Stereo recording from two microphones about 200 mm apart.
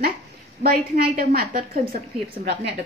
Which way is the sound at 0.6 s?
50° right (ahead or behind).